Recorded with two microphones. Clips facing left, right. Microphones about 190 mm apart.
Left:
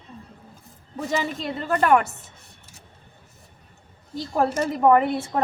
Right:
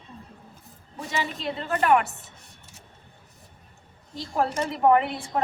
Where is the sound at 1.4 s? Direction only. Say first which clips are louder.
Left 1 dB; 45° left (ahead or behind).